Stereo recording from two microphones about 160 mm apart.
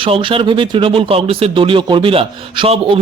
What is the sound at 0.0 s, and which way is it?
Speech, 35° right (ahead or behind).